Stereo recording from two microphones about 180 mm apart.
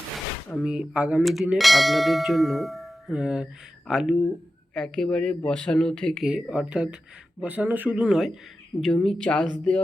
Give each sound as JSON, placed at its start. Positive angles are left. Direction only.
{"t": 0.5, "sound": "bell", "side_deg": -5}
{"t": 7.4, "sound": "speech", "side_deg": -10}
{"t": 8.8, "sound": "bell", "side_deg": 0}